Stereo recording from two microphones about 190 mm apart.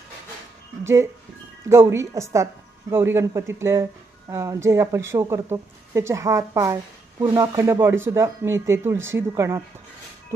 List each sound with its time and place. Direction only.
1.7 s speech: 15° right (ahead or behind)